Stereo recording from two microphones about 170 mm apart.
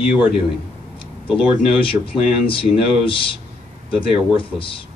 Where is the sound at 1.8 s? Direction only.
30° left (ahead or behind).